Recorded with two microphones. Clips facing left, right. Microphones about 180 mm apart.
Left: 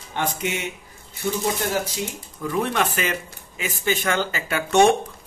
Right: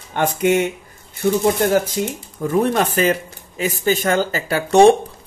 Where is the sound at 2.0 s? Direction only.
50° right (ahead or behind); by 4.9 s 35° right (ahead or behind).